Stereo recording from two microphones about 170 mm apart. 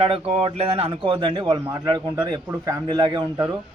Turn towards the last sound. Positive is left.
turn(degrees=-25)  # may be behind; listen again after turning